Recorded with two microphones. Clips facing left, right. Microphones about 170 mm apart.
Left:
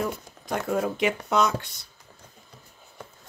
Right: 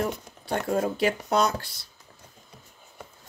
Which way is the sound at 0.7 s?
35° right (ahead or behind).